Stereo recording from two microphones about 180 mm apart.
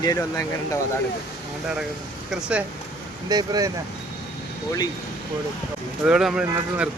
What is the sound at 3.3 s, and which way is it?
Speech, 20° right (ahead or behind).